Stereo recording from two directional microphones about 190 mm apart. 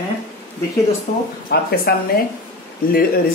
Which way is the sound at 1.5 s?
55° left (ahead or behind).